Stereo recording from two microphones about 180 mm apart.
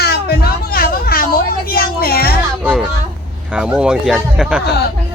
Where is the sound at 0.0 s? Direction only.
55° left (ahead or behind).